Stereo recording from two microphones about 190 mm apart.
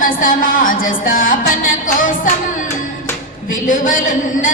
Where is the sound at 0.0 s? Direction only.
45° left (ahead or behind).